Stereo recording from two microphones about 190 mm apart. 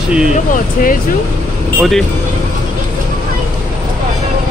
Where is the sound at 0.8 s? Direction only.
45° left (ahead or behind).